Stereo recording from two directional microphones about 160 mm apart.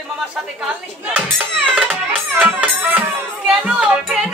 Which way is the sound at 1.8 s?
10° right (ahead or behind).